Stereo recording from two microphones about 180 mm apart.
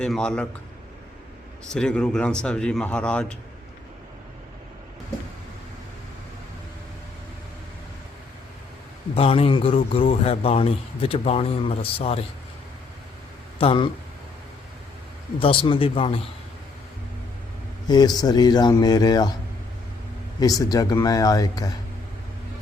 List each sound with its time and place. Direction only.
0.0 s speech: 5° left (ahead or behind)
1.7 s speech: 5° left (ahead or behind)
9.1 s a man's voice: 30° left (ahead or behind)
13.6 s a man's voice: 30° left (ahead or behind)
15.4 s speech: 30° left (ahead or behind)
17.8 s speech: 20° left (ahead or behind)
20.4 s speech: 20° left (ahead or behind)